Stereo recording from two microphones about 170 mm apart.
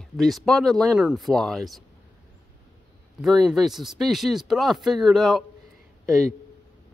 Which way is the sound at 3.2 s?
Centre (ahead or behind).